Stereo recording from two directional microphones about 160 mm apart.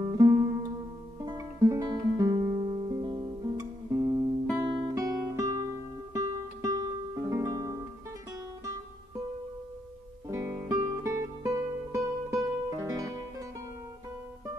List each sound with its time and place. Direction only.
0.0 s music: 20° right (ahead or behind)
3.9 s music: 15° right (ahead or behind)
10.2 s music: 20° right (ahead or behind)